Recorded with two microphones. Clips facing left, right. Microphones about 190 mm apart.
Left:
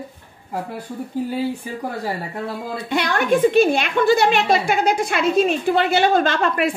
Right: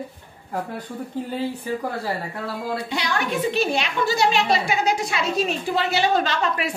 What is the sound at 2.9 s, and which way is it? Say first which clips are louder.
A woman's voice: left 10 dB; 55° left (ahead or behind).